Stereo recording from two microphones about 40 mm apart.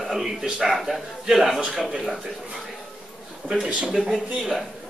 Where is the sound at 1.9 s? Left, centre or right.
Centre.